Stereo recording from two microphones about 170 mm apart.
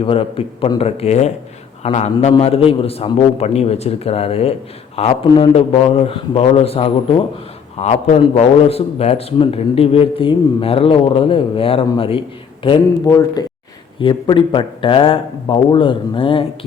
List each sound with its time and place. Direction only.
0.0 s a man's voice: 30° left (ahead or behind)